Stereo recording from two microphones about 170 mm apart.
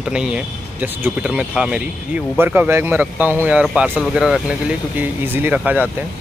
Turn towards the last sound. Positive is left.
turn(degrees=-10)  # may be behind; listen again after turning